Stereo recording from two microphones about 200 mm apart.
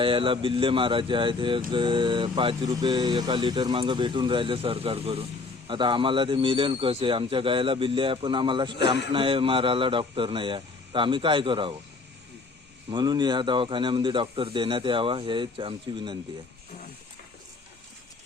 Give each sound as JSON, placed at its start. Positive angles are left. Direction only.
{"t": 0.0, "sound": "speech", "side_deg": -25}
{"t": 12.9, "sound": "speech", "side_deg": -20}